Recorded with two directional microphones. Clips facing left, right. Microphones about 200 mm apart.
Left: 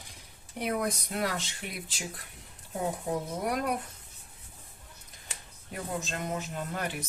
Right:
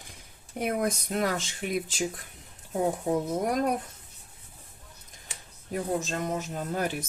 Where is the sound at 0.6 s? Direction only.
50° right (ahead or behind).